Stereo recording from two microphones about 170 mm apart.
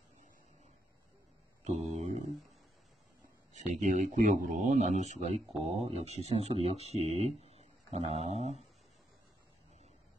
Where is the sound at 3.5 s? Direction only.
45° right (ahead or behind).